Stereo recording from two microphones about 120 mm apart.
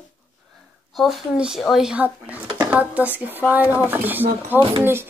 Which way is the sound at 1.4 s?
5° right (ahead or behind).